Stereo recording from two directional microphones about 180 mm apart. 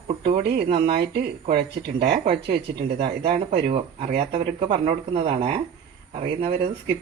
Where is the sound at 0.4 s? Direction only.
60° right (ahead or behind).